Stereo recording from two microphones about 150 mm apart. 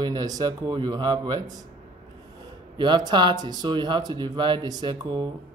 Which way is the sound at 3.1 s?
30° right (ahead or behind).